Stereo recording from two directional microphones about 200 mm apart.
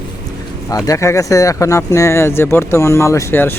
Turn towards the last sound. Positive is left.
turn(degrees=10)  # may be behind; listen again after turning